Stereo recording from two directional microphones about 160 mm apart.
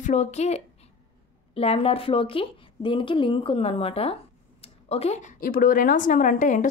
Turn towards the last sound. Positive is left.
turn(degrees=55)  # may be behind; listen again after turning